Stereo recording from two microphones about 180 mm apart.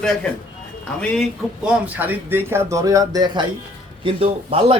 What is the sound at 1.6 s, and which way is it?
A man's voice, 10° right (ahead or behind).